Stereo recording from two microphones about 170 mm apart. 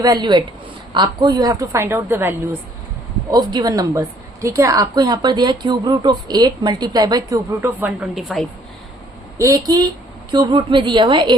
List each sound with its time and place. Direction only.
0.0 s a woman's voice: 25° right (ahead or behind)
3.3 s a woman's voice: 25° right (ahead or behind); by 8.4 s centre (ahead or behind)
9.4 s a woman's voice: 20° right (ahead or behind)